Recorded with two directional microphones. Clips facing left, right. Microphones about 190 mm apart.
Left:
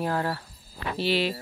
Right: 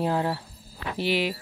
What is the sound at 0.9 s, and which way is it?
Speech, 15° right (ahead or behind).